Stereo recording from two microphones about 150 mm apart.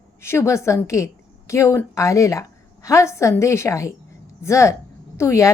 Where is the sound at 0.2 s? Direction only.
15° left (ahead or behind).